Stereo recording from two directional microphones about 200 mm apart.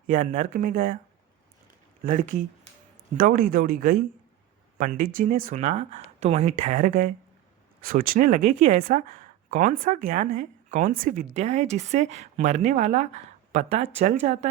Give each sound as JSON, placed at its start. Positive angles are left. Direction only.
{"t": 0.1, "sound": "speech", "side_deg": -40}
{"t": 2.0, "sound": "speech", "side_deg": -40}